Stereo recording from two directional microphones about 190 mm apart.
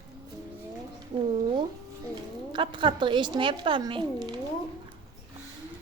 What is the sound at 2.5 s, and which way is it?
Speech, 25° right (ahead or behind).